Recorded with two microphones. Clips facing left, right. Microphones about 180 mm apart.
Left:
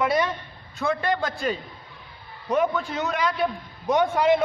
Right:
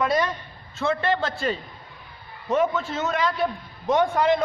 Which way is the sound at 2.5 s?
15° left (ahead or behind).